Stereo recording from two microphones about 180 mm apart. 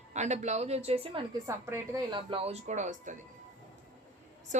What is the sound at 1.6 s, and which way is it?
A woman's voice, 20° right (ahead or behind).